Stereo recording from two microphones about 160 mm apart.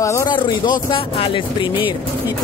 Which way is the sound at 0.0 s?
20° left (ahead or behind).